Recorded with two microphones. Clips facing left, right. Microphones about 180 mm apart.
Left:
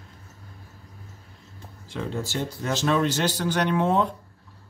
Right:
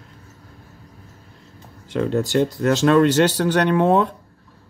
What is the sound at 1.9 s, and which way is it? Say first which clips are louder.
Speech: right 10 dB; 70° right (ahead or behind).